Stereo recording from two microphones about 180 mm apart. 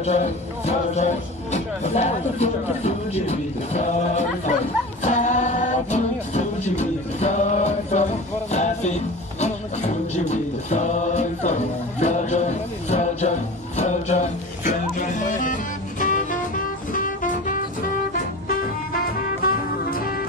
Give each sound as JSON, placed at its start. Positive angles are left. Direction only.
{"t": 0.0, "sound": "speech", "side_deg": 35}
{"t": 5.0, "sound": "music", "side_deg": 40}
{"t": 19.4, "sound": "music", "side_deg": 55}